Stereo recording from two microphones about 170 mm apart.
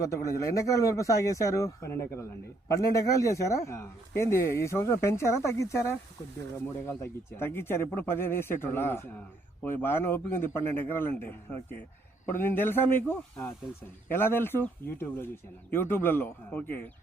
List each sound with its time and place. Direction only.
0.0 s speech: 20° left (ahead or behind)